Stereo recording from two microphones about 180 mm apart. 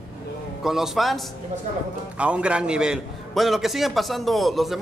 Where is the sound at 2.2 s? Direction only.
5° right (ahead or behind).